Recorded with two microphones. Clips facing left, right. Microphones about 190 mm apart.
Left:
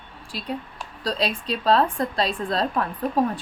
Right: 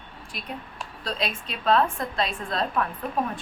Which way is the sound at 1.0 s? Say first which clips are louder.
Left 5 dB; 35° left (ahead or behind).